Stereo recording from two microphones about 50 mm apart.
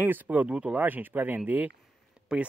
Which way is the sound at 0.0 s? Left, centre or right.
Right.